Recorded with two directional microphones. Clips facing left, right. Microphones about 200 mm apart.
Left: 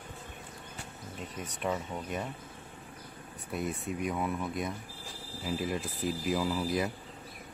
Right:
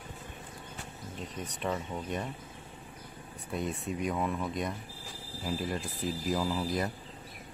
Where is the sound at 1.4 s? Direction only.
5° left (ahead or behind).